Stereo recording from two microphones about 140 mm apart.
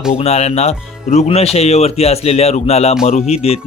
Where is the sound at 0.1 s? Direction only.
50° left (ahead or behind).